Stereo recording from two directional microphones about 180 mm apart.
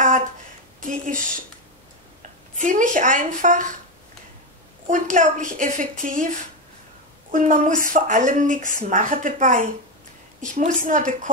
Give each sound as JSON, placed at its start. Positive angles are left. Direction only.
{"t": 0.8, "sound": "a woman's voice", "side_deg": -45}
{"t": 2.5, "sound": "a woman's voice", "side_deg": -45}
{"t": 4.8, "sound": "a woman's voice", "side_deg": -45}
{"t": 7.2, "sound": "a woman's voice", "side_deg": -45}